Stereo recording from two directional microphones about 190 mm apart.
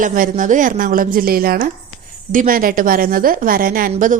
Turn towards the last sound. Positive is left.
turn(degrees=-45)  # may be behind; listen again after turning